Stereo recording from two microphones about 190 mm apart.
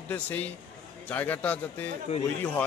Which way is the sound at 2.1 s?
35° left (ahead or behind).